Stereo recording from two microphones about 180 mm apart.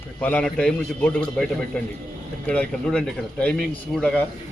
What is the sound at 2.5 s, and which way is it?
A man's voice, 5° left (ahead or behind).